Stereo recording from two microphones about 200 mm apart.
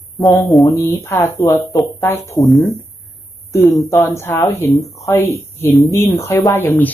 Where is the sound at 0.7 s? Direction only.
10° left (ahead or behind).